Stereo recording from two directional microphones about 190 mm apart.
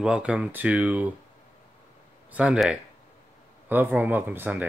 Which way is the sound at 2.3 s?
5° right (ahead or behind).